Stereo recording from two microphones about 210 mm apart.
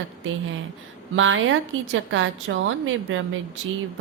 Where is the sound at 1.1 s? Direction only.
70° right (ahead or behind).